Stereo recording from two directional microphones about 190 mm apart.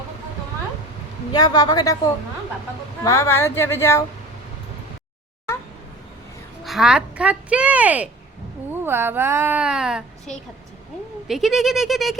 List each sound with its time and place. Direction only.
1.3 s a woman's voice: 20° left (ahead or behind)
3.0 s speech: 15° left (ahead or behind)
6.7 s a woman's voice: centre (ahead or behind)